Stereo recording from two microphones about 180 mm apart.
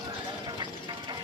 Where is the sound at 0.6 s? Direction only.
25° right (ahead or behind).